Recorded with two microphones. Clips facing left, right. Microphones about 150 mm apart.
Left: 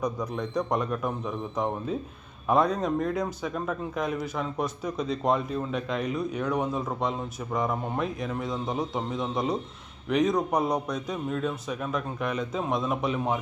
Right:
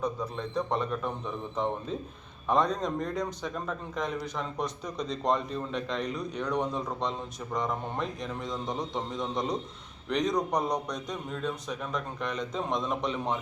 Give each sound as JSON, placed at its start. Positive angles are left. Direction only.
{"t": 0.0, "sound": "speech", "side_deg": 10}